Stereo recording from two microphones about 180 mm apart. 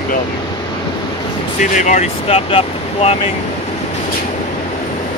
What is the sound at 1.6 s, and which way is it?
Speech, 45° left (ahead or behind).